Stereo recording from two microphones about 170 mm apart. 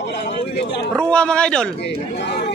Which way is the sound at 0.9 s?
5° left (ahead or behind).